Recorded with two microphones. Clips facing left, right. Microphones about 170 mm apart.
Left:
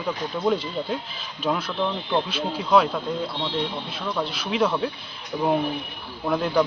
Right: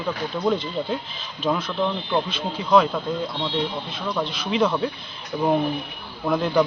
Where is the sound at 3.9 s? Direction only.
5° left (ahead or behind).